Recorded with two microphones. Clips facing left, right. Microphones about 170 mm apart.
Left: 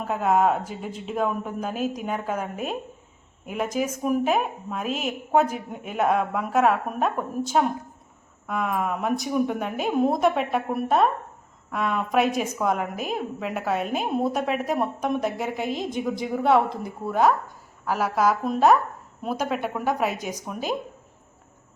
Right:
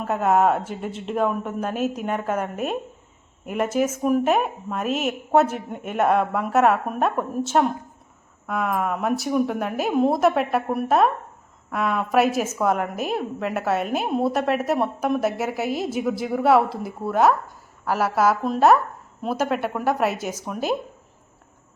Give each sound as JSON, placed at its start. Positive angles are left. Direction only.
{"t": 0.1, "sound": "a woman's voice", "side_deg": 0}